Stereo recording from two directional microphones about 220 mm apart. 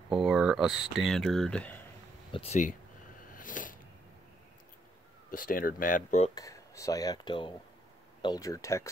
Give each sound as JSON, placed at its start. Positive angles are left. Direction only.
{"t": 0.3, "sound": "speech", "side_deg": -5}
{"t": 2.3, "sound": "speech", "side_deg": 30}
{"t": 3.3, "sound": "a sound", "side_deg": 35}
{"t": 5.3, "sound": "speech", "side_deg": 40}
{"t": 6.3, "sound": "speech", "side_deg": 15}